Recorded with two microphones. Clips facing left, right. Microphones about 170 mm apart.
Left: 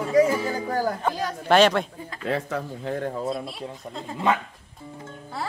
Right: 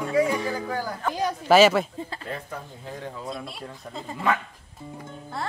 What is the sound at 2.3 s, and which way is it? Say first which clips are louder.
Speech: left 8 dB; 90° left.